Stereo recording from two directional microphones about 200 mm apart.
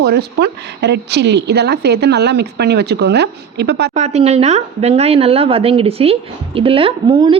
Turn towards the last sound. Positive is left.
turn(degrees=-25)  # may be behind; listen again after turning